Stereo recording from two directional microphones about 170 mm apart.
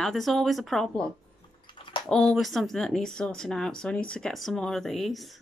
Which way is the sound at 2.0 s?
Centre (ahead or behind).